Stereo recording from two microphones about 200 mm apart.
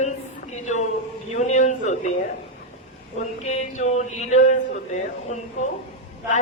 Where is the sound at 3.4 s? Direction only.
35° left (ahead or behind).